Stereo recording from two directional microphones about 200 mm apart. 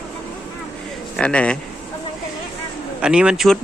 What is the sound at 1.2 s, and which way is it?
Speech, 5° left (ahead or behind).